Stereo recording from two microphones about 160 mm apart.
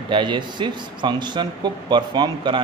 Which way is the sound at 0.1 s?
30° right (ahead or behind).